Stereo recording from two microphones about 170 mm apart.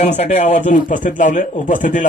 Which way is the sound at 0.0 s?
40° left (ahead or behind).